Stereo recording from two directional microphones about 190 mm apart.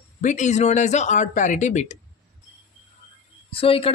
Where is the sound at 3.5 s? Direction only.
30° left (ahead or behind).